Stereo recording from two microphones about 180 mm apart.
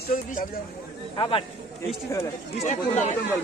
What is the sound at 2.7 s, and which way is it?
Speech, 40° left (ahead or behind).